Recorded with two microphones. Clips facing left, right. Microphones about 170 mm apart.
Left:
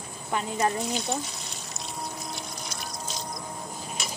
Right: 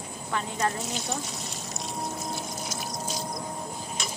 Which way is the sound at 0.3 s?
15° left (ahead or behind).